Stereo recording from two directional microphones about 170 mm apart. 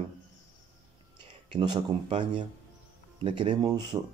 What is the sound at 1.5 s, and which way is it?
Speech, 30° right (ahead or behind).